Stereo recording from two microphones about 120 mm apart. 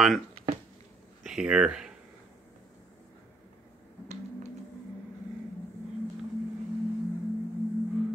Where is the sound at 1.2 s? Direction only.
5° right (ahead or behind).